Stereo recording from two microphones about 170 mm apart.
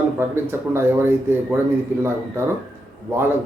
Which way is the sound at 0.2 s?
15° right (ahead or behind).